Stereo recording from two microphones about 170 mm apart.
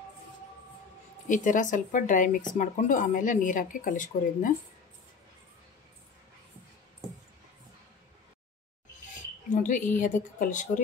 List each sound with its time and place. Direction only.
1.3 s speech: 50° left (ahead or behind)
9.5 s a sound: 50° left (ahead or behind)
9.9 s speech: 50° left (ahead or behind)